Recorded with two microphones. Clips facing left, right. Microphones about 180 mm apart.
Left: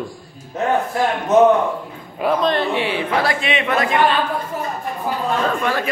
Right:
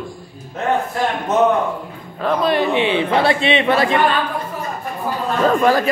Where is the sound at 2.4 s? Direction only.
15° right (ahead or behind); by 4.0 s 30° right (ahead or behind).